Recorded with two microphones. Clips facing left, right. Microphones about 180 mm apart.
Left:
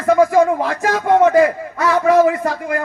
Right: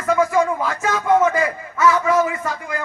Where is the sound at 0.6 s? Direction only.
55° left (ahead or behind).